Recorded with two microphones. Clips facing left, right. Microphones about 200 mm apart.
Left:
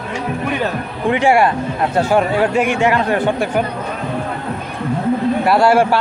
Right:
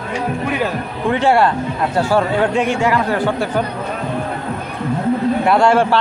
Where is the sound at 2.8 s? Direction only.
20° left (ahead or behind).